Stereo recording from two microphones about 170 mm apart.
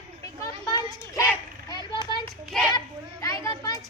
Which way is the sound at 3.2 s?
20° left (ahead or behind).